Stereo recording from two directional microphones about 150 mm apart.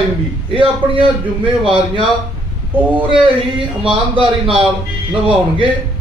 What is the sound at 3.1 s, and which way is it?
A man's voice, 35° right (ahead or behind).